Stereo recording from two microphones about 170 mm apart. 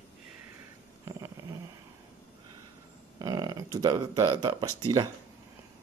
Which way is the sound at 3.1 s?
25° right (ahead or behind).